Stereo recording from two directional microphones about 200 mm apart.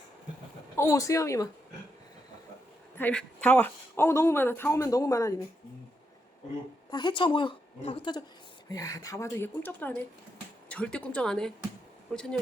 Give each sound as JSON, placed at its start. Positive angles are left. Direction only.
{"t": 0.8, "sound": "speech", "side_deg": 15}
{"t": 3.0, "sound": "speech", "side_deg": 5}
{"t": 6.9, "sound": "a woman's voice", "side_deg": 25}